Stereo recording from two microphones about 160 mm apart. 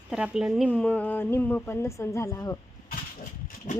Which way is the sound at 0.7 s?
10° left (ahead or behind).